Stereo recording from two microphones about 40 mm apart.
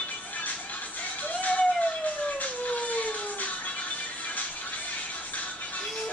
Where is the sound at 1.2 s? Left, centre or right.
Left.